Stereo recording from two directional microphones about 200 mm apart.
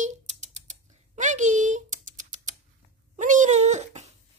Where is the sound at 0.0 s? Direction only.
35° right (ahead or behind).